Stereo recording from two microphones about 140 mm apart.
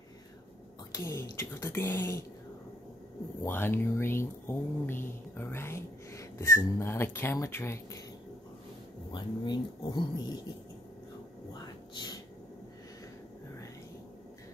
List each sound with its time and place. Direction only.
0.9 s a woman's voice: 20° left (ahead or behind)
3.4 s speech: 15° left (ahead or behind)
9.1 s speech: 30° left (ahead or behind)
11.9 s a sound: 30° left (ahead or behind)